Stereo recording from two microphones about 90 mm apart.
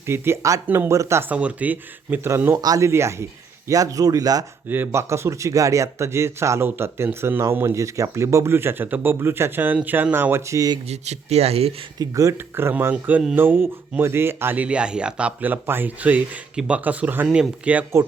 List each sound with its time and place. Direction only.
0.1 s speech: 30° right (ahead or behind)
1.3 s speech: 15° right (ahead or behind)
2.6 s speech: 45° right (ahead or behind)
2.8 s speech: 30° right (ahead or behind)
4.7 s speech: 25° right (ahead or behind)
11.9 s speech: 40° right (ahead or behind)
12.8 s speech: 20° right (ahead or behind)